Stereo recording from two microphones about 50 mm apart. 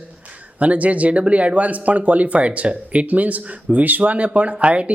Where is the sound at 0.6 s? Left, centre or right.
Right.